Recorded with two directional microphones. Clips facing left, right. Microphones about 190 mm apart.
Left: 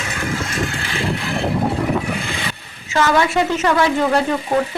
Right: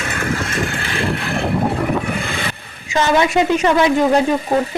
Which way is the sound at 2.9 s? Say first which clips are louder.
Right 1 dB; 20° right (ahead or behind).